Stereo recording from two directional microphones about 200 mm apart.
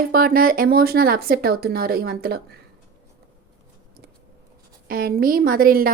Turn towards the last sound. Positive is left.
turn(degrees=-45)  # may be behind; listen again after turning